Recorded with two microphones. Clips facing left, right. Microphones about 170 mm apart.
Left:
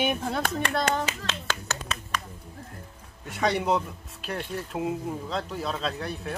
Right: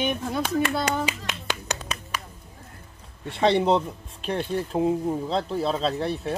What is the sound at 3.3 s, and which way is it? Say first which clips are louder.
Speech: right 5 dB; 25° right (ahead or behind).